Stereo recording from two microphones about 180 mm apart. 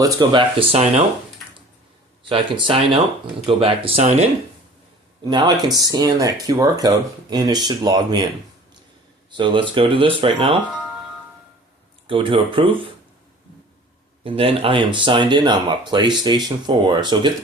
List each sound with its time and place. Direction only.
0.0 s speech: 25° right (ahead or behind)
2.3 s speech: 30° right (ahead or behind)
5.2 s speech: 25° right (ahead or behind)
9.3 s speech: 25° right (ahead or behind)
12.0 s speech: 30° right (ahead or behind)
14.3 s speech: 30° right (ahead or behind)